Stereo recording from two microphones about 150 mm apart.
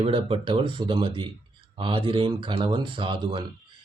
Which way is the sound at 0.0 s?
35° right (ahead or behind).